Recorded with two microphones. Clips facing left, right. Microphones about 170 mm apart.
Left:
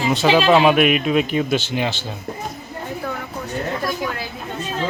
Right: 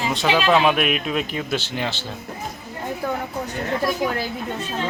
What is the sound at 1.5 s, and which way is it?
Speech, 15° left (ahead or behind).